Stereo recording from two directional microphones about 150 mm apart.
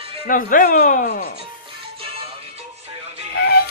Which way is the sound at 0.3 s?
65° left (ahead or behind).